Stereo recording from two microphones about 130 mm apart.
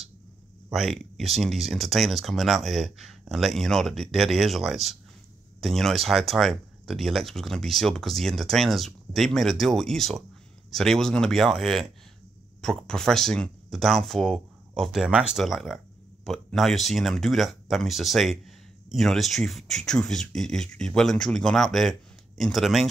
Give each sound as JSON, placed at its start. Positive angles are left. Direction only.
{"t": 0.7, "sound": "speech", "side_deg": 0}